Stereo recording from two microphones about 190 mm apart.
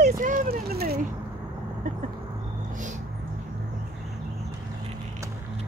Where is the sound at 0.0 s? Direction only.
45° right (ahead or behind).